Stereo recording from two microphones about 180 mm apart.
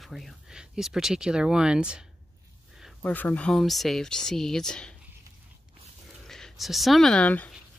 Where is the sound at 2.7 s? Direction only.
Centre (ahead or behind).